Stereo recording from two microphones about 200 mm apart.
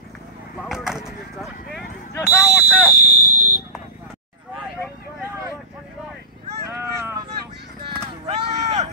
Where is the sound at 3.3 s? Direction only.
90° right.